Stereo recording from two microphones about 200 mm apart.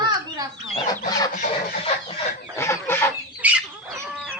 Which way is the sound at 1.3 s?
40° left (ahead or behind).